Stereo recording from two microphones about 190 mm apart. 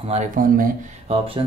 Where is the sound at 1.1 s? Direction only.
30° right (ahead or behind).